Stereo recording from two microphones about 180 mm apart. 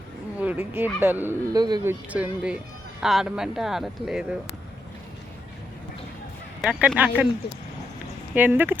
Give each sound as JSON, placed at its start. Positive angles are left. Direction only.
{"t": 0.4, "sound": "speech", "side_deg": -10}
{"t": 1.5, "sound": "speech", "side_deg": -20}
{"t": 1.9, "sound": "speech", "side_deg": -10}
{"t": 6.6, "sound": "speech", "side_deg": -10}
{"t": 8.4, "sound": "speech", "side_deg": -10}